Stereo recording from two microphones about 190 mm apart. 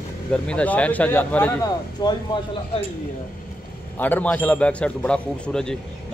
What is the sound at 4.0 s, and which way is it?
Speech, 10° left (ahead or behind).